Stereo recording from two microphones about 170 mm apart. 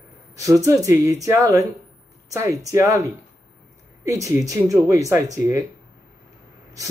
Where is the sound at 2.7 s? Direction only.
15° right (ahead or behind).